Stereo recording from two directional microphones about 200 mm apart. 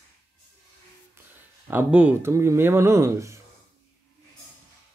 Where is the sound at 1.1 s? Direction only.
10° right (ahead or behind).